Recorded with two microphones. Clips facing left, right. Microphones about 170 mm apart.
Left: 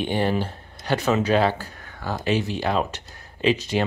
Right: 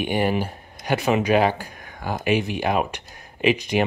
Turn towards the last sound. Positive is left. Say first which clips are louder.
# right 1 dB
turn(degrees=-15)  # may be behind; listen again after turning